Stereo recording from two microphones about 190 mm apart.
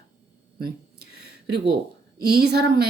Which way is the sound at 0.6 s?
55° right (ahead or behind).